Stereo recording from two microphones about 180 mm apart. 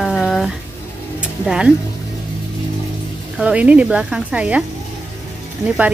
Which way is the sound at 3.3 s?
5° right (ahead or behind).